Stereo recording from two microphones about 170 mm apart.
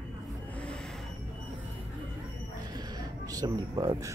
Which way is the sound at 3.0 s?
20° right (ahead or behind).